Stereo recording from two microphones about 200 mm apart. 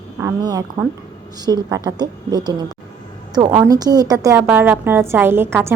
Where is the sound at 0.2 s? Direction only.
15° right (ahead or behind).